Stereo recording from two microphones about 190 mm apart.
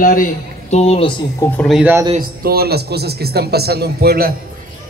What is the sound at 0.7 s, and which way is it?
Speech, 35° left (ahead or behind).